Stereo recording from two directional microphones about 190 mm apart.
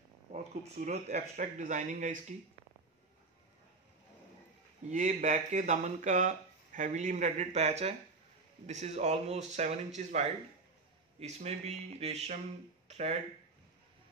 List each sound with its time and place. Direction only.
0.3 s speech: 35° right (ahead or behind)
4.8 s speech: 40° right (ahead or behind)
12.8 s a sound: 35° right (ahead or behind)